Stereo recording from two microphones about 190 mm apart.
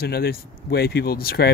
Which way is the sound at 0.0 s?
55° left (ahead or behind).